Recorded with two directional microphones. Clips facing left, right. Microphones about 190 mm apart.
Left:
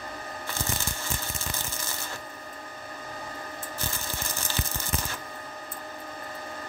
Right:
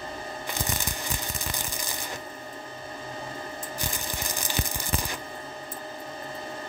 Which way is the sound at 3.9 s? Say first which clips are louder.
Right 2 dB; 15° right (ahead or behind).